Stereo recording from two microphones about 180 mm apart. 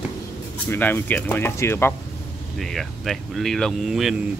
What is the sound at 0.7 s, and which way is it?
Speech, 10° left (ahead or behind).